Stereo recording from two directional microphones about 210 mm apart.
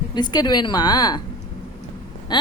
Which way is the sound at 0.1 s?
20° left (ahead or behind).